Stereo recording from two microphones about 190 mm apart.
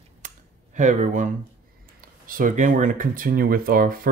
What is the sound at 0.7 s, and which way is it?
Speech, 40° right (ahead or behind).